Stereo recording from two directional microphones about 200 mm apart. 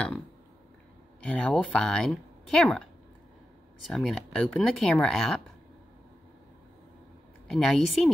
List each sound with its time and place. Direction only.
1.2 s speech: 5° left (ahead or behind)
3.8 s speech: centre (ahead or behind)
7.5 s speech: centre (ahead or behind)